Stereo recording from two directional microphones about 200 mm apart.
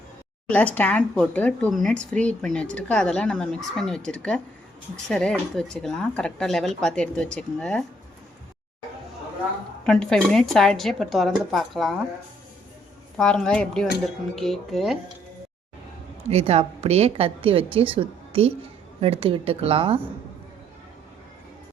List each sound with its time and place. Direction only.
0.4 s speech: 5° left (ahead or behind)
9.8 s speech: 5° left (ahead or behind)
13.1 s speech: 5° left (ahead or behind)
16.3 s a woman's voice: 30° right (ahead or behind)